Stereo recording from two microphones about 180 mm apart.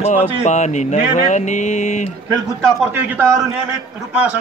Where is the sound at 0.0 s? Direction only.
40° left (ahead or behind).